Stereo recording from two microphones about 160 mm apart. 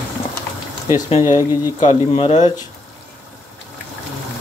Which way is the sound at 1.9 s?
45° left (ahead or behind).